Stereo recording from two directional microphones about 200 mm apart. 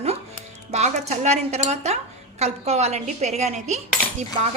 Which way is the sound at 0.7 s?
35° right (ahead or behind).